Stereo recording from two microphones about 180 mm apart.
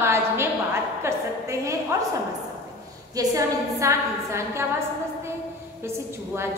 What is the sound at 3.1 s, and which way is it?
A woman's voice, 20° right (ahead or behind).